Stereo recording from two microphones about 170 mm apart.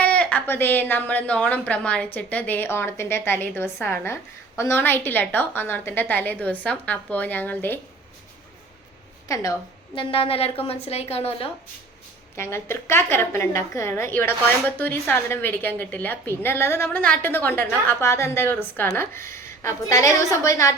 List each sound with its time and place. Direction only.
0.0 s a woman's voice: 10° left (ahead or behind)
9.2 s a woman's voice: 20° left (ahead or behind)
9.9 s a woman's voice: 30° left (ahead or behind)
12.4 s a woman's voice: 15° left (ahead or behind)